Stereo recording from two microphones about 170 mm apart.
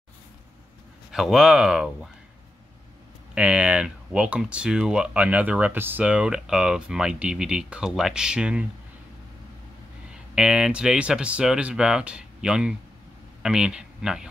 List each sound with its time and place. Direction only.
1.1 s speech: centre (ahead or behind)
3.3 s speech: 5° right (ahead or behind)
10.3 s speech: 5° right (ahead or behind)